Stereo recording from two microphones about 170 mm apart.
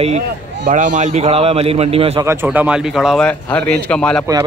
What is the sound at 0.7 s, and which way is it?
A man's voice, 45° right (ahead or behind).